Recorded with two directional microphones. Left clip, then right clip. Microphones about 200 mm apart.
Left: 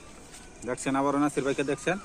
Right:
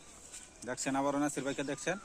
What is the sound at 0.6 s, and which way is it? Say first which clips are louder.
Speech: left 6 dB; 55° right (ahead or behind).